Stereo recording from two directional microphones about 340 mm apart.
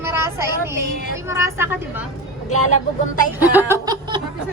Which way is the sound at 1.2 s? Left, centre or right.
Centre.